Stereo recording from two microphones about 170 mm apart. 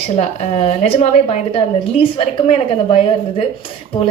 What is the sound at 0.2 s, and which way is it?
A woman's voice, 40° left (ahead or behind).